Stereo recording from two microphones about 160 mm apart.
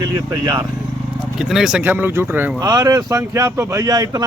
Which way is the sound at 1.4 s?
Centre (ahead or behind).